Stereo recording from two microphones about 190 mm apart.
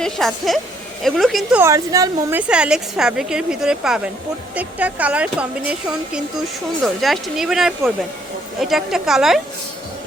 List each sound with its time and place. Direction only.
0.0 s a woman's voice: centre (ahead or behind)
1.6 s speech: 15° right (ahead or behind)
2.5 s a woman's voice: 5° right (ahead or behind)
6.8 s a woman's voice: centre (ahead or behind)